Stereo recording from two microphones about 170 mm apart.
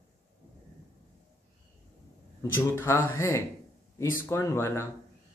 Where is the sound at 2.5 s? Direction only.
15° left (ahead or behind).